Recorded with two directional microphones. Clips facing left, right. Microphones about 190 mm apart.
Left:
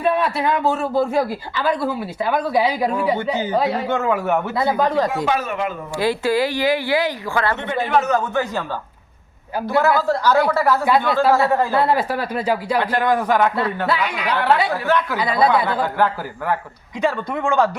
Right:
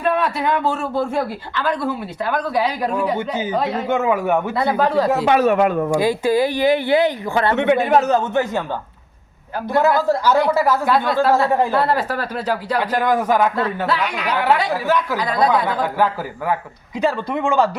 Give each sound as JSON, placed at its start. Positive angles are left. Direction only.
{"t": 0.0, "sound": "speech", "side_deg": 5}
{"t": 3.8, "sound": "a man's voice", "side_deg": -10}
{"t": 4.5, "sound": "speech", "side_deg": 0}
{"t": 5.2, "sound": "speech", "side_deg": -65}
{"t": 6.0, "sound": "speech", "side_deg": -20}
{"t": 7.5, "sound": "a man's voice", "side_deg": -65}
{"t": 7.9, "sound": "speech", "side_deg": -35}
{"t": 9.8, "sound": "a man's voice", "side_deg": -15}
{"t": 10.8, "sound": "speech", "side_deg": 10}
{"t": 12.8, "sound": "a man's voice", "side_deg": -5}
{"t": 13.8, "sound": "speech", "side_deg": 10}
{"t": 14.3, "sound": "a man's voice", "side_deg": -10}
{"t": 15.2, "sound": "speech", "side_deg": 5}
{"t": 17.0, "sound": "speech", "side_deg": -5}